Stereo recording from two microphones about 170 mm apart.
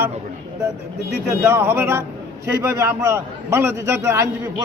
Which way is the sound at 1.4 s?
15° right (ahead or behind).